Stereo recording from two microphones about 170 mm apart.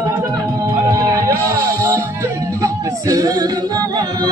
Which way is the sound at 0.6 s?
20° right (ahead or behind).